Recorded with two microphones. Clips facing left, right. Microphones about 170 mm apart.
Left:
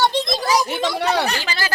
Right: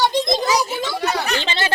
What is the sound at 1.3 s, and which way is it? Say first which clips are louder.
Speech: right 3 dB; 25° right (ahead or behind).